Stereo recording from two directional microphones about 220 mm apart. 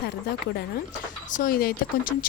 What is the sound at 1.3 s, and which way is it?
Speech, 40° left (ahead or behind).